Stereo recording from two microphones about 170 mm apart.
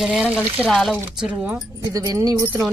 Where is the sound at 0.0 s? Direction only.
5° right (ahead or behind).